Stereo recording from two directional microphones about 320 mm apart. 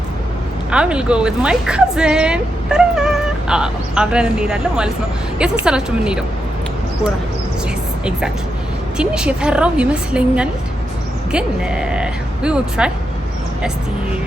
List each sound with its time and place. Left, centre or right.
0.7 s a woman's voice: centre
9.0 s a woman's voice: centre